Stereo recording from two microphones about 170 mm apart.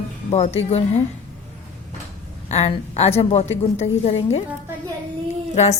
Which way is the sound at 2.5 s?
40° left (ahead or behind).